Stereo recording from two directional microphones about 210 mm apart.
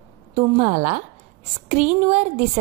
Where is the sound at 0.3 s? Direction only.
30° right (ahead or behind).